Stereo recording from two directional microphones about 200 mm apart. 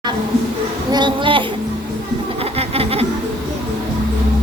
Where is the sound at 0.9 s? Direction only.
20° right (ahead or behind).